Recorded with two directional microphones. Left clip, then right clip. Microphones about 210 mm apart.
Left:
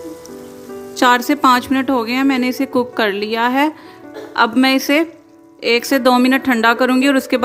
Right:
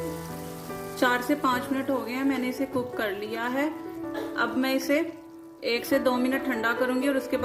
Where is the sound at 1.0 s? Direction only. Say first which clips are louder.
Left 12 dB; 40° left (ahead or behind).